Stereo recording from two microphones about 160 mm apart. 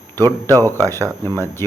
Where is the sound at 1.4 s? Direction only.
15° left (ahead or behind).